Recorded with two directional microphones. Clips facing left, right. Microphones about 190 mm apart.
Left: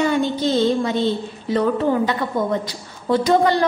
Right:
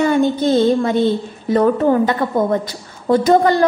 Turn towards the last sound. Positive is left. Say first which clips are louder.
# right 4 dB
turn(degrees=-45)  # may be behind; listen again after turning